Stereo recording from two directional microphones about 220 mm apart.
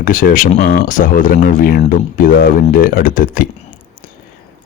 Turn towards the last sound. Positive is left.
turn(degrees=40)  # may be behind; listen again after turning